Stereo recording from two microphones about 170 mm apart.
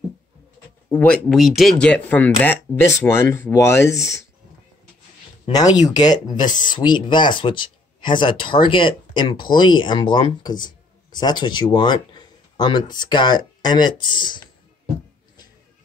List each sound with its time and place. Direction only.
0.8 s speech: 10° left (ahead or behind)
5.4 s speech: 20° left (ahead or behind)